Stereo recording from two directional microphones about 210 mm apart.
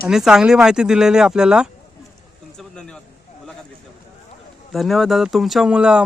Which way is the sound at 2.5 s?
5° left (ahead or behind).